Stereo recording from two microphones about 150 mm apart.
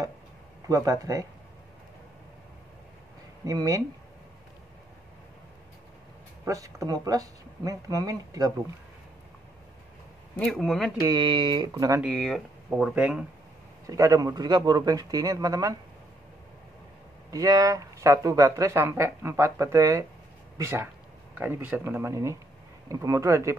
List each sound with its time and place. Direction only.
0.7 s speech: 20° right (ahead or behind)
3.4 s speech: 20° right (ahead or behind)
6.4 s speech: 20° right (ahead or behind)
10.3 s speech: 5° left (ahead or behind)
11.0 s speech: 25° right (ahead or behind)
11.7 s speech: 20° right (ahead or behind)
12.0 s speech: 5° left (ahead or behind)
13.8 s speech: 20° right (ahead or behind)
17.3 s speech: 20° right (ahead or behind)